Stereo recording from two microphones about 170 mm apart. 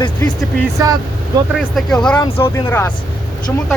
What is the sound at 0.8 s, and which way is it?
Speech, 20° right (ahead or behind).